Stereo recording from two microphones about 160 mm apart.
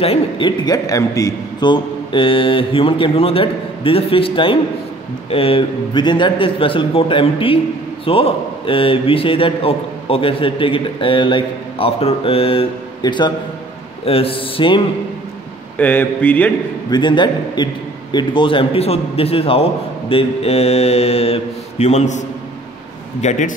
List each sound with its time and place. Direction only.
0.0 s a man's voice: 35° left (ahead or behind)
15.8 s speech: 10° left (ahead or behind)
16.9 s a man's voice: 30° left (ahead or behind); by 22.2 s 45° left (ahead or behind)
23.2 s speech: 55° left (ahead or behind)